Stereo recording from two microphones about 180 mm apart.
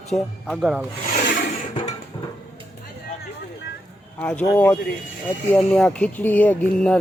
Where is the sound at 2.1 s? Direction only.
15° left (ahead or behind).